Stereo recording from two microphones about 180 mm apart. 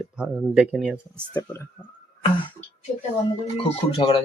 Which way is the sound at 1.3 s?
15° left (ahead or behind).